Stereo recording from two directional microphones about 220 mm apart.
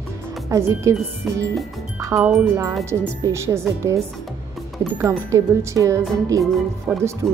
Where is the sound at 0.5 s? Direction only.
15° right (ahead or behind).